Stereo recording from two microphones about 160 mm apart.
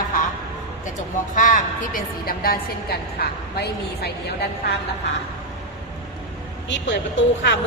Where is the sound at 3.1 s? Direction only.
90° left.